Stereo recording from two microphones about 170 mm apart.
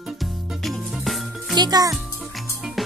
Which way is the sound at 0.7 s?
Centre (ahead or behind).